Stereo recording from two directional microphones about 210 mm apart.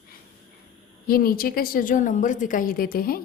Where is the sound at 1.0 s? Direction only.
45° left (ahead or behind).